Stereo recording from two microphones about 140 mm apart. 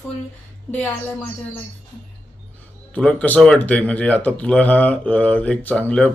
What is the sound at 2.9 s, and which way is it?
Speech, 10° left (ahead or behind).